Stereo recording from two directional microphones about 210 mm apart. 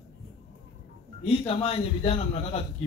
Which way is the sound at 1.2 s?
25° left (ahead or behind).